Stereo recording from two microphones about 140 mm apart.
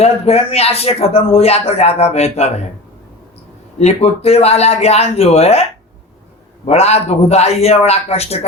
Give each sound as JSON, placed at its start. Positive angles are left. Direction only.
{"t": 0.0, "sound": "speech", "side_deg": 45}
{"t": 3.8, "sound": "speech", "side_deg": 50}
{"t": 6.7, "sound": "speech", "side_deg": 50}